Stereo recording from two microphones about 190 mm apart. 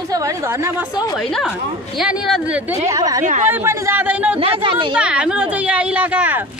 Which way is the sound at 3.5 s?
15° right (ahead or behind).